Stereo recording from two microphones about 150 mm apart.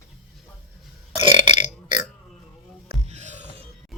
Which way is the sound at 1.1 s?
35° right (ahead or behind).